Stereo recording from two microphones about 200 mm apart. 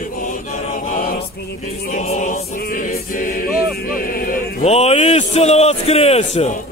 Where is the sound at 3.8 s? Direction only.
45° left (ahead or behind).